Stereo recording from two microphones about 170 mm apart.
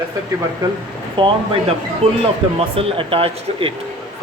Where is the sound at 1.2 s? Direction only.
30° right (ahead or behind).